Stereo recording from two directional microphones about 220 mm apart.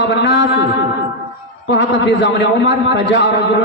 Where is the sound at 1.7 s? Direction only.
55° left (ahead or behind).